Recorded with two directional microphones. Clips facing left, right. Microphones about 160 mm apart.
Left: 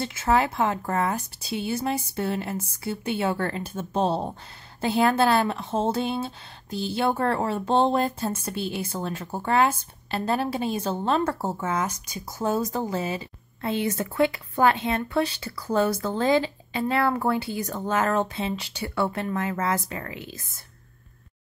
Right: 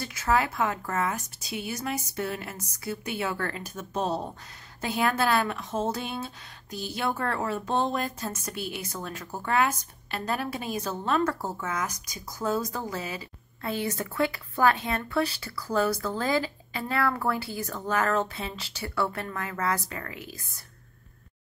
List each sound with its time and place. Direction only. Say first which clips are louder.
0.0 s a woman's voice: left 3 dB; 25° left (ahead or behind)